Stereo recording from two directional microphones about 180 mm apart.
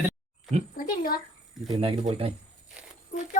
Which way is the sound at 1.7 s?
35° right (ahead or behind).